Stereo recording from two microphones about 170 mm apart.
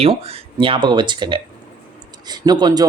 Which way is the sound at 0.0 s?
35° right (ahead or behind).